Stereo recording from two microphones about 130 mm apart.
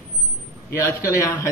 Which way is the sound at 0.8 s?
20° left (ahead or behind).